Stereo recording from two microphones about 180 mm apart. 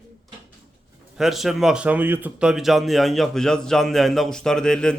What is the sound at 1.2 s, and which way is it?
A man's voice, centre (ahead or behind).